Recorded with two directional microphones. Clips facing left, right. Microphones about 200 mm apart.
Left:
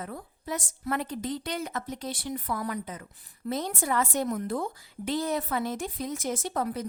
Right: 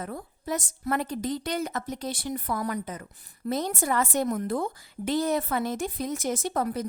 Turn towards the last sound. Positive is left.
turn(degrees=-45)  # may be behind; listen again after turning